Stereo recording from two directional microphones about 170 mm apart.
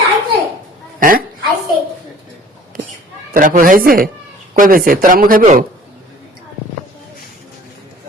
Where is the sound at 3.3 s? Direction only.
55° right (ahead or behind).